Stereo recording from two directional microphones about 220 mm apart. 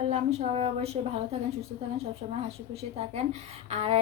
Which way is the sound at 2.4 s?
25° right (ahead or behind).